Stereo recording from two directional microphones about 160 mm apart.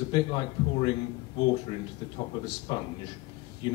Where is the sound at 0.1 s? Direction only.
30° left (ahead or behind).